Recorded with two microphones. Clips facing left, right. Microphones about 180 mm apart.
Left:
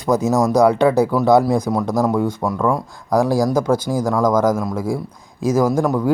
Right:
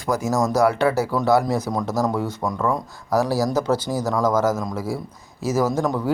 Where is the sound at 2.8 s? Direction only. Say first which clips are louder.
Left 4 dB; 15° left (ahead or behind).